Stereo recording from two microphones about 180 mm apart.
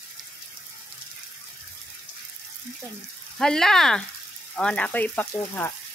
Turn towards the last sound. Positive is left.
turn(degrees=10)  # may be behind; listen again after turning